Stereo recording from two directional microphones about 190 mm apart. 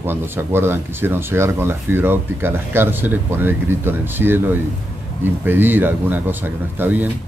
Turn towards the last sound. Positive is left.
turn(degrees=-10)  # may be behind; listen again after turning